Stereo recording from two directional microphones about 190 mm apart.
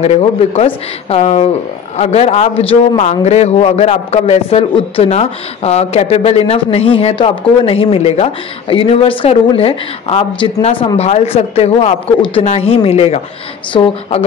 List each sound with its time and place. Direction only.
0.0 s a man's voice: 35° left (ahead or behind)